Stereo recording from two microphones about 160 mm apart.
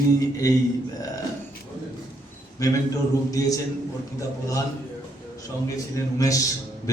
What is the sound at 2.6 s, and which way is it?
Speech, 20° left (ahead or behind).